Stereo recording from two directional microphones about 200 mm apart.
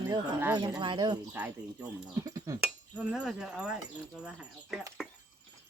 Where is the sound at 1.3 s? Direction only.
10° right (ahead or behind).